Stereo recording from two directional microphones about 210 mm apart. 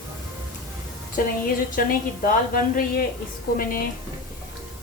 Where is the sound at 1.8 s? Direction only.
45° left (ahead or behind).